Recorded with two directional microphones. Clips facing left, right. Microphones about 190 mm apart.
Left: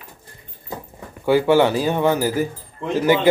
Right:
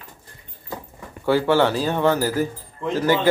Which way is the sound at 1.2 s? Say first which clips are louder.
Left 3 dB; 15° left (ahead or behind).